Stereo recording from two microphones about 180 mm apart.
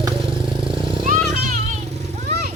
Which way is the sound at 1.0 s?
40° right (ahead or behind).